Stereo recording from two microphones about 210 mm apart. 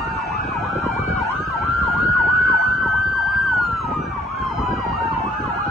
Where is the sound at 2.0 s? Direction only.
Centre (ahead or behind).